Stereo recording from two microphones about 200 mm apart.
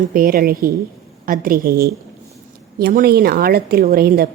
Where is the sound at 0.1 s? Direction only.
45° right (ahead or behind).